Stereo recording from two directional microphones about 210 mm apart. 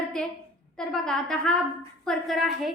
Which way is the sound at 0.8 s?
5° left (ahead or behind).